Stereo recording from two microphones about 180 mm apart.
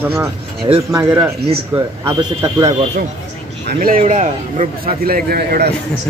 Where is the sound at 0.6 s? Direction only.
30° right (ahead or behind).